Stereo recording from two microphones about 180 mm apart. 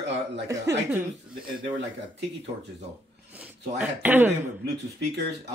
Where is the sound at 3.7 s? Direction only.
10° right (ahead or behind).